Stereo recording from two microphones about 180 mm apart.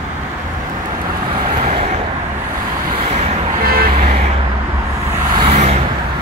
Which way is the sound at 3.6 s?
55° right (ahead or behind).